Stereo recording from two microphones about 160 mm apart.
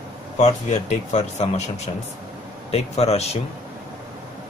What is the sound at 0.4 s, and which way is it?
Speech, 45° left (ahead or behind).